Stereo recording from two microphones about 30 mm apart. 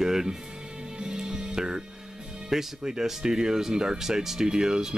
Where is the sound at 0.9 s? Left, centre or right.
Right.